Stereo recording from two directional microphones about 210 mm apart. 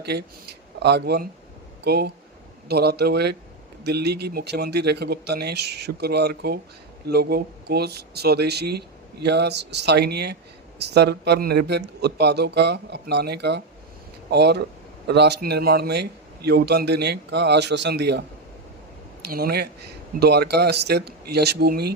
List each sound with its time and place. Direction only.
0.0 s a man's voice: 50° right (ahead or behind)